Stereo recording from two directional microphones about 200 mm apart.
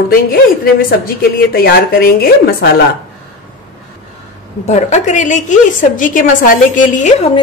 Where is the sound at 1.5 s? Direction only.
50° left (ahead or behind).